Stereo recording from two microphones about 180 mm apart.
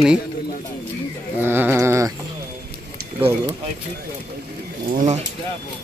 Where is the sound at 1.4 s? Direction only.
10° right (ahead or behind).